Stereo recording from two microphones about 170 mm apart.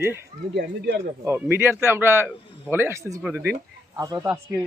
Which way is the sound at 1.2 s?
15° right (ahead or behind).